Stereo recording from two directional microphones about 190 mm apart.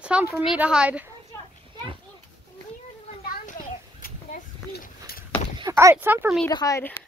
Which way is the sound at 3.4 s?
45° left (ahead or behind).